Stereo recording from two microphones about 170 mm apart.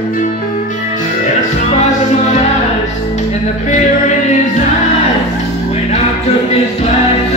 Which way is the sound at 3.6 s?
45° left (ahead or behind).